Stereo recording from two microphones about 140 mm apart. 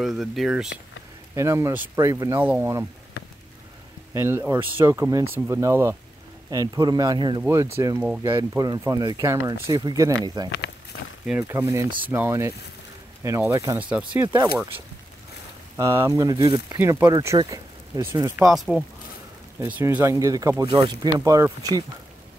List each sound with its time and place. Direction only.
0.0 s speech: centre (ahead or behind)
1.3 s speech: 20° right (ahead or behind)
4.1 s speech: 20° right (ahead or behind)
7.7 s speech: 20° right (ahead or behind)
13.7 s speech: 10° right (ahead or behind)
14.3 s speech: 25° right (ahead or behind)
15.7 s speech: 20° right (ahead or behind)
18.4 s speech: centre (ahead or behind)
19.6 s speech: 15° right (ahead or behind)
20.6 s speech: 35° right (ahead or behind)